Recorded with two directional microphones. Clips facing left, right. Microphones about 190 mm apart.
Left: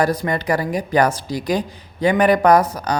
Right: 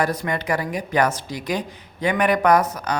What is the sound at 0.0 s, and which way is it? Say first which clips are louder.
A woman's voice: left 4 dB; 35° left (ahead or behind).